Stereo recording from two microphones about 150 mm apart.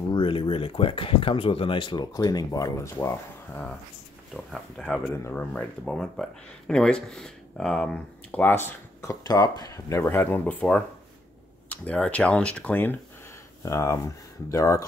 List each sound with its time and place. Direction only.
0.1 s speech: 35° left (ahead or behind); by 3.7 s 15° left (ahead or behind)
4.3 s speech: centre (ahead or behind); by 14.9 s 20° left (ahead or behind)